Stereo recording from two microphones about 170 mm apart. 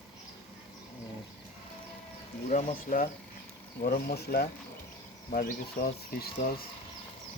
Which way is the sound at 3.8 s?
70° left (ahead or behind).